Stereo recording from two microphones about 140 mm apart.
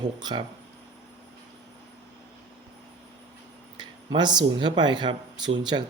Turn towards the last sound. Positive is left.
turn(degrees=-30)  # may be behind; listen again after turning